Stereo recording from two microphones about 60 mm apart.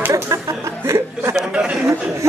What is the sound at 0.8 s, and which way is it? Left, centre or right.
Chuckle, right.